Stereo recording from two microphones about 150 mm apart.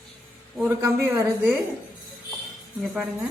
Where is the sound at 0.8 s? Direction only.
15° right (ahead or behind).